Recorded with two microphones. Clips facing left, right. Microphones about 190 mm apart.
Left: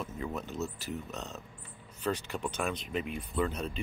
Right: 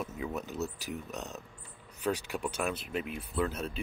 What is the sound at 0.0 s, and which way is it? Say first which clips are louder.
Speech: right 1 dB; 5° right (ahead or behind).